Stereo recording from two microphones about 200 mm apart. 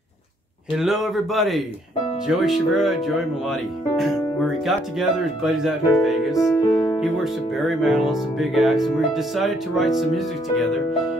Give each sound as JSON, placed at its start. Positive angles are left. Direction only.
{"t": 0.7, "sound": "speech", "side_deg": 0}
{"t": 6.5, "sound": "speech", "side_deg": 15}
{"t": 7.5, "sound": "speech", "side_deg": 0}